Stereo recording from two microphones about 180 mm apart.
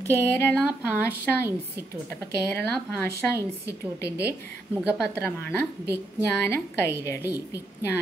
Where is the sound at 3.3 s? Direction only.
60° right (ahead or behind).